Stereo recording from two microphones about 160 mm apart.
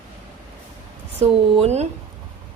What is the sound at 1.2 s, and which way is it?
Speech, 45° right (ahead or behind).